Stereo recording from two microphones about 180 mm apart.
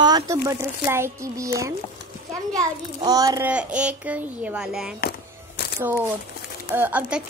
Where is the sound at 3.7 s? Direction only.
5° right (ahead or behind).